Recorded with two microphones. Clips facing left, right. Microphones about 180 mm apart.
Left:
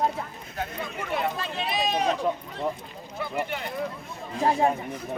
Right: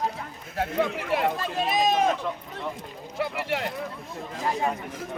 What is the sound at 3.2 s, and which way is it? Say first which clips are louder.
Speech: right 2 dB; 90° right.